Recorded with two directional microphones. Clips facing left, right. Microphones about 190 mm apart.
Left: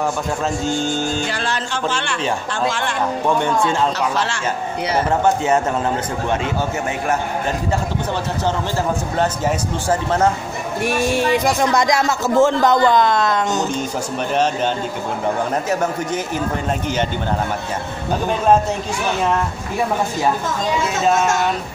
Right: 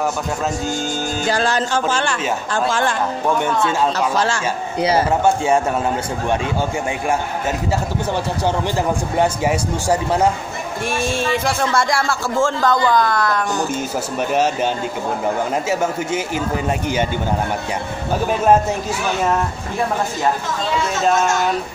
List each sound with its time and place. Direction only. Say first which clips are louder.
0.7 s music: left 2 dB; 40° right (ahead or behind)
4.9 s a man's voice: even; 10° right (ahead or behind)
9.1 s a man's voice: right 3 dB; 10° right (ahead or behind)
10.8 s speech: left 3 dB; 10° left (ahead or behind)
14.3 s a man's voice: even; 10° right (ahead or behind)
15.7 s a man's voice: even; 10° right (ahead or behind)
21.0 s speech: even; centre (ahead or behind)